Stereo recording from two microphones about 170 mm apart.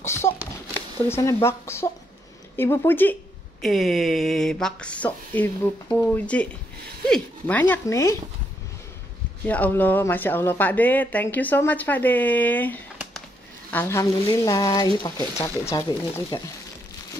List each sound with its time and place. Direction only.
0.0 s a sound: 15° left (ahead or behind)
1.0 s speech: 15° left (ahead or behind)
3.6 s speech: centre (ahead or behind); by 8.2 s 15° left (ahead or behind)
9.5 s speech: 10° left (ahead or behind)